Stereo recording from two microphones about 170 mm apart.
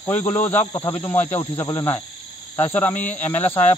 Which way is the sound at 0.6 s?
25° left (ahead or behind).